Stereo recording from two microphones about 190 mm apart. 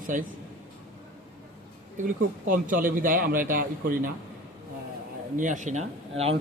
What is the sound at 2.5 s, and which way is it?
A man's voice, 45° right (ahead or behind).